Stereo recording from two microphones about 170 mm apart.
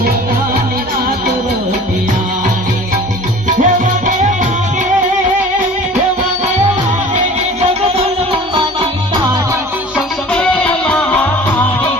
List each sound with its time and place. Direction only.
3.5 s music: 50° right (ahead or behind)
7.9 s music: 35° right (ahead or behind)
10.3 s music: 5° left (ahead or behind)